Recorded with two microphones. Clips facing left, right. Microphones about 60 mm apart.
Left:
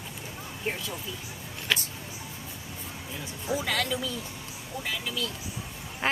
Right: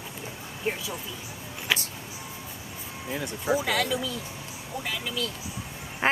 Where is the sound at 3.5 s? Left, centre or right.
Centre.